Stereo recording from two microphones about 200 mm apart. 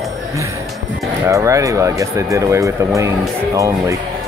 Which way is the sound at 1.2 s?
15° right (ahead or behind).